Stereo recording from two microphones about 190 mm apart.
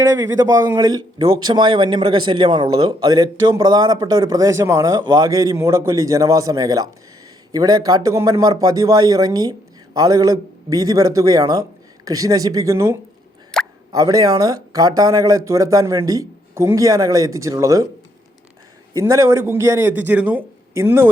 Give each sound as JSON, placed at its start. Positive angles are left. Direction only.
{"t": 0.0, "sound": "speech", "side_deg": -20}
{"t": 13.5, "sound": "plop", "side_deg": 5}
{"t": 13.9, "sound": "speech", "side_deg": -20}
{"t": 18.9, "sound": "speech", "side_deg": -20}